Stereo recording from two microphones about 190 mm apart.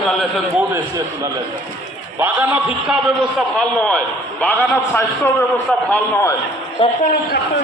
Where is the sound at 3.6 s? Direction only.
5° left (ahead or behind).